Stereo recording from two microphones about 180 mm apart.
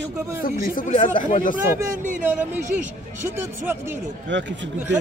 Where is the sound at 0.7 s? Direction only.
45° left (ahead or behind).